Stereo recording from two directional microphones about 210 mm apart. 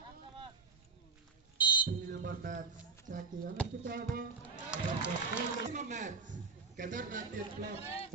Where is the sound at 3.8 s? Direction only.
40° right (ahead or behind).